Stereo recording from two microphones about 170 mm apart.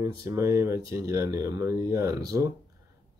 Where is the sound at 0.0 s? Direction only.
20° right (ahead or behind).